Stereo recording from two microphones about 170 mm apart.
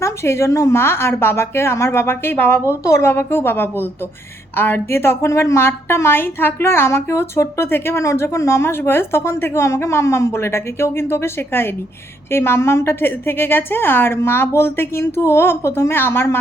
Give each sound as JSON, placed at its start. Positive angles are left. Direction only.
{"t": 0.0, "sound": "a woman's voice", "side_deg": 15}